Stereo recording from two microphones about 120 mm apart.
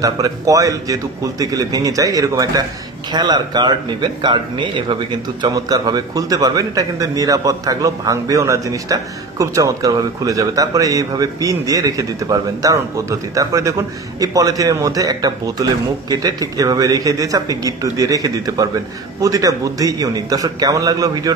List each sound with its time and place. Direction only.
0.0 s a man's voice: 30° right (ahead or behind)